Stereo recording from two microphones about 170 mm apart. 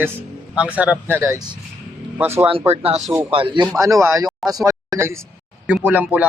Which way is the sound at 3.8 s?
20° right (ahead or behind).